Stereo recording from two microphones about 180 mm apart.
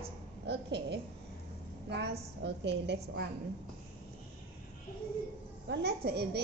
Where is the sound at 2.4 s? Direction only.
70° right (ahead or behind).